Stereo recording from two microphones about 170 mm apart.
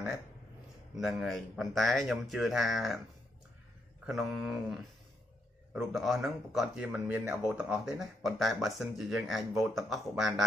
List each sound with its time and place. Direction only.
0.9 s speech: centre (ahead or behind)
4.0 s speech: centre (ahead or behind)